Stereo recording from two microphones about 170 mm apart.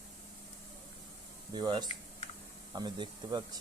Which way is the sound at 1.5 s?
25° right (ahead or behind).